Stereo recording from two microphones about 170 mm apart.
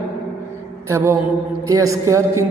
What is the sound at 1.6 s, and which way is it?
Speech, 20° right (ahead or behind).